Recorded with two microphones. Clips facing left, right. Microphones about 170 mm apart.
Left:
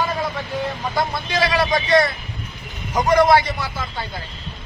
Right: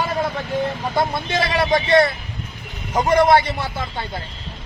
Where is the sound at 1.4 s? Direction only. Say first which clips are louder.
Right 1 dB; 25° right (ahead or behind).